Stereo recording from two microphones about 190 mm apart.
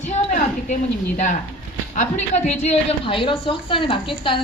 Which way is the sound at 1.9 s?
40° left (ahead or behind).